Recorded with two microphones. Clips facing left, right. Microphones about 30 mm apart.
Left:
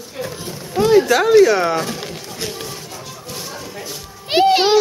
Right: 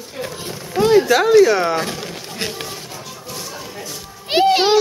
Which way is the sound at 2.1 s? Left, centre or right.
Right.